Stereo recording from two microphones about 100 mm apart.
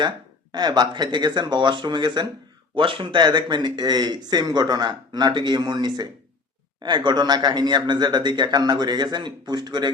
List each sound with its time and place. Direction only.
0.5 s speech: 45° right (ahead or behind)